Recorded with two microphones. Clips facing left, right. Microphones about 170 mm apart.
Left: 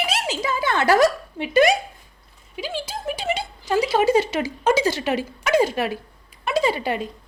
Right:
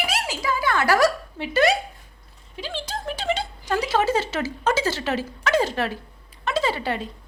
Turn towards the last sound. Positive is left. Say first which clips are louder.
# left 3 dB
turn(degrees=15)  # may be behind; listen again after turning